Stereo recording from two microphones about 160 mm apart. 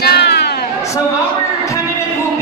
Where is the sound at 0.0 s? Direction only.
90° left.